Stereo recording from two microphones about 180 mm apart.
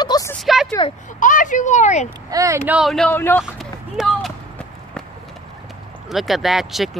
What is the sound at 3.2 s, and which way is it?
Speech, 10° left (ahead or behind).